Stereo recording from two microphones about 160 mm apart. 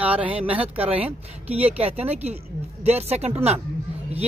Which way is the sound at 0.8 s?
40° right (ahead or behind).